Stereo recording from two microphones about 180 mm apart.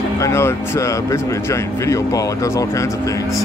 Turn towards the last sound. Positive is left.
turn(degrees=20)  # may be behind; listen again after turning